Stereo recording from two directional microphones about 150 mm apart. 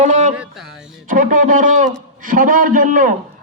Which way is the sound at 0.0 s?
50° right (ahead or behind).